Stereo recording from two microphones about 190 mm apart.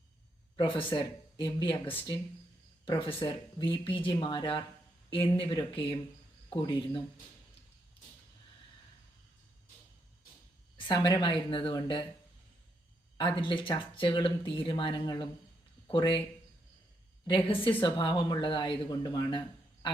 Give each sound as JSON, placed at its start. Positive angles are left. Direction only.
{"t": 0.8, "sound": "speech", "side_deg": 25}
{"t": 2.8, "sound": "speech", "side_deg": 25}
{"t": 10.8, "sound": "speech", "side_deg": 25}
{"t": 13.1, "sound": "speech", "side_deg": 25}
{"t": 17.2, "sound": "speech", "side_deg": 25}